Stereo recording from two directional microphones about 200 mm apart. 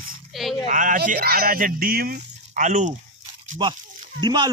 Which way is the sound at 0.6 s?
40° right (ahead or behind).